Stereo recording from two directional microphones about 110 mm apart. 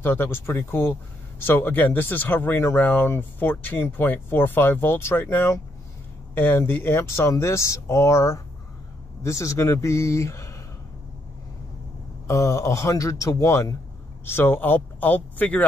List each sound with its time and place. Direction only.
0.0 s speech: 20° left (ahead or behind)
12.3 s speech: 30° left (ahead or behind)